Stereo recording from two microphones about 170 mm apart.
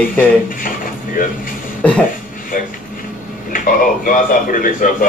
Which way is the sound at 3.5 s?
55° left (ahead or behind).